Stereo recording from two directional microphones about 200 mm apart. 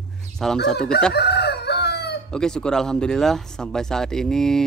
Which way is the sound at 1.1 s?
55° left (ahead or behind).